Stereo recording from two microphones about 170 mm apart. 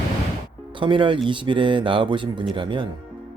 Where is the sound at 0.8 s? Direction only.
30° right (ahead or behind).